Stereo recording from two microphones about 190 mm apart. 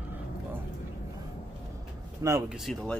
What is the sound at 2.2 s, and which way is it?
Speech, 15° right (ahead or behind).